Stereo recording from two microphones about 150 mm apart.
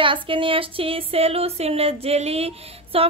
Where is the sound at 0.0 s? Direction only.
35° right (ahead or behind).